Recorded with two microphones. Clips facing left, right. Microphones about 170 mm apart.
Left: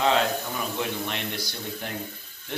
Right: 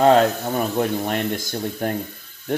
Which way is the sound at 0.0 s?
45° right (ahead or behind).